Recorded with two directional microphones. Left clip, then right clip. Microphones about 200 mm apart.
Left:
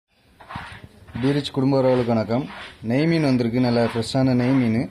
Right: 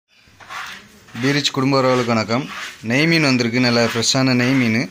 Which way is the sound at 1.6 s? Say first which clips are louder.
Right 1 dB; centre (ahead or behind).